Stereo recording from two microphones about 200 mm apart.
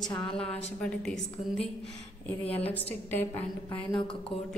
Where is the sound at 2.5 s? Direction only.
10° left (ahead or behind).